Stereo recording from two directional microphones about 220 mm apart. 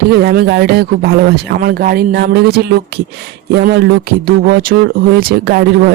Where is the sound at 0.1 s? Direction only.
45° right (ahead or behind).